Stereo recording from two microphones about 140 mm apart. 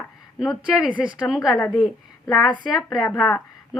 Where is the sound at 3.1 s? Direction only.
10° left (ahead or behind).